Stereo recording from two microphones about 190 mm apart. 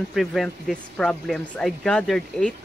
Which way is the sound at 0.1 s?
Centre (ahead or behind).